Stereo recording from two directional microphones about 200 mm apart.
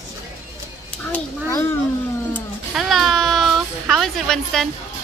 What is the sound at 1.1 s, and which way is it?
Speech, 10° left (ahead or behind).